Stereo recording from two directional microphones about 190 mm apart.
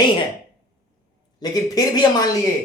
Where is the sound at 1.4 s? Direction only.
20° left (ahead or behind).